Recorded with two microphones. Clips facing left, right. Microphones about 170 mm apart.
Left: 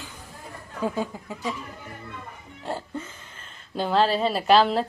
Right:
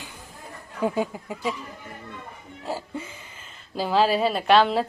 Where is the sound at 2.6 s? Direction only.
5° right (ahead or behind).